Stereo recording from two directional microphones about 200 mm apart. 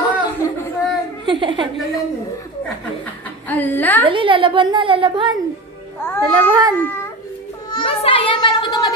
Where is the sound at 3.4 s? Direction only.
10° left (ahead or behind).